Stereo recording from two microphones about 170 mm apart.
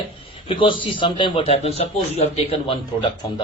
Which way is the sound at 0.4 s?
30° left (ahead or behind).